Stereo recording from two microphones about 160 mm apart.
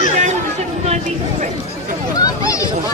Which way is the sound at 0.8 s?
45° right (ahead or behind).